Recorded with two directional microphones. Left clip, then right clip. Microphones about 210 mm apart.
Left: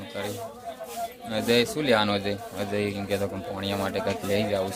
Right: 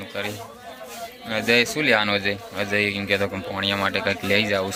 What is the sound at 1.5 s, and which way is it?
Speech, centre (ahead or behind).